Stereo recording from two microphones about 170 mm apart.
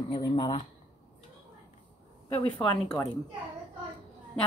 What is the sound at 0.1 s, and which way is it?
Speech, 25° left (ahead or behind).